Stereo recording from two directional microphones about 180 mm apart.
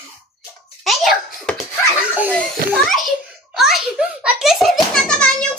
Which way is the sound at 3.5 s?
Centre (ahead or behind).